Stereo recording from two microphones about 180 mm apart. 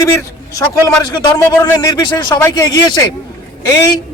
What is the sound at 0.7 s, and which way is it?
Speech, 15° left (ahead or behind).